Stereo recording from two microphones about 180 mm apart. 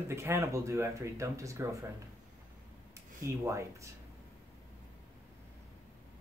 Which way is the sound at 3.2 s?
15° right (ahead or behind).